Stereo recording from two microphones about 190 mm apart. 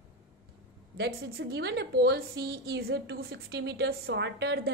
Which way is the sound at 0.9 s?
60° right (ahead or behind).